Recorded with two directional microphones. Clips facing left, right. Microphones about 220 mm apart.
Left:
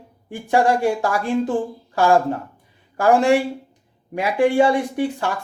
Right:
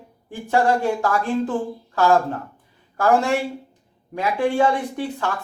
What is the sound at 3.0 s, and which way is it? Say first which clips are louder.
Speech: left 3 dB; 15° left (ahead or behind).